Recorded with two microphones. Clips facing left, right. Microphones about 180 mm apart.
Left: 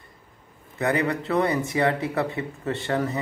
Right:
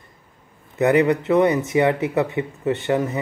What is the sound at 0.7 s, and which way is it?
Speech, 20° right (ahead or behind).